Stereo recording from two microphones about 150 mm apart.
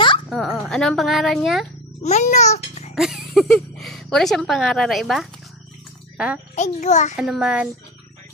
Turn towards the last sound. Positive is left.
turn(degrees=-5)  # may be behind; listen again after turning